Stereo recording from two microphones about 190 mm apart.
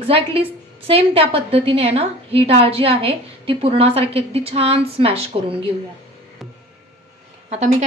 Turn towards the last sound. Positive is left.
turn(degrees=-35)  # may be behind; listen again after turning